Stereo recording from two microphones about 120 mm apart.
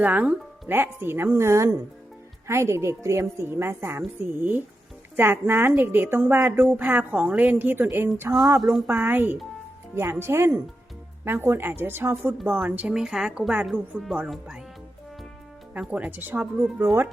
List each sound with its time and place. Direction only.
0.0 s a woman's voice: 15° right (ahead or behind)
5.1 s a woman's voice: 20° right (ahead or behind)
15.7 s a woman's voice: 10° right (ahead or behind)